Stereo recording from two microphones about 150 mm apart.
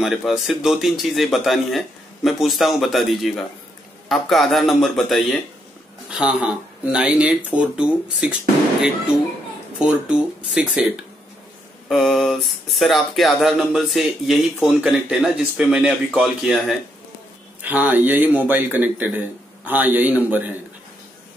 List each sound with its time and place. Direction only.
0.0 s speech: centre (ahead or behind)
9.8 s speech: 5° right (ahead or behind)
11.9 s speech: centre (ahead or behind)